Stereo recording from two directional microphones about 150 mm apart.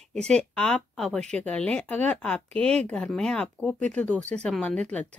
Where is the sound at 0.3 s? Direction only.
5° left (ahead or behind).